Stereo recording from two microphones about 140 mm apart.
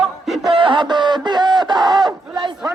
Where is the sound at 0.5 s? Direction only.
35° right (ahead or behind).